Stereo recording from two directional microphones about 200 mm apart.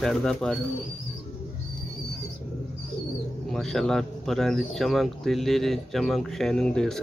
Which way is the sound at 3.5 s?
Centre (ahead or behind).